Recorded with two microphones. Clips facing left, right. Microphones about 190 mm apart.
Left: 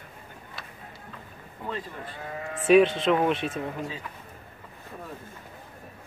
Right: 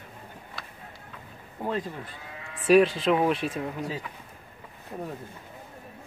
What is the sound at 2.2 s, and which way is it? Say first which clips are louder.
Sheep: left 8 dB; 50° left (ahead or behind).